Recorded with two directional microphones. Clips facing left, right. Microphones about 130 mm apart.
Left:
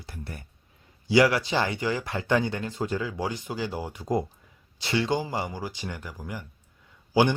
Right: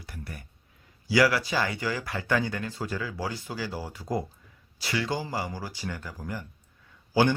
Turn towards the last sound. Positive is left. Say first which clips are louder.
# left 1 dB
turn(degrees=15)  # may be behind; listen again after turning